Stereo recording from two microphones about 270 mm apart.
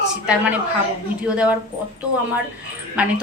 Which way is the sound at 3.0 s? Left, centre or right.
Centre.